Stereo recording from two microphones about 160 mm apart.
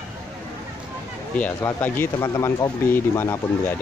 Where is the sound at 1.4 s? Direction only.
10° left (ahead or behind).